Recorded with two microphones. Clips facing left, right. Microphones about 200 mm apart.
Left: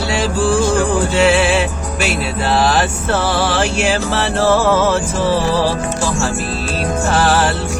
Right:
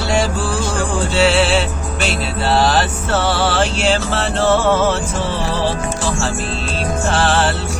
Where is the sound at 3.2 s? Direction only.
30° right (ahead or behind).